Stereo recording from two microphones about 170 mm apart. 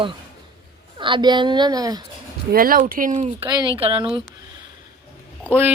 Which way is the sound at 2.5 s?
55° right (ahead or behind).